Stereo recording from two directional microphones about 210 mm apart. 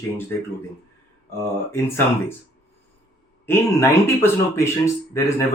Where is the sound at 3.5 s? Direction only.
10° left (ahead or behind).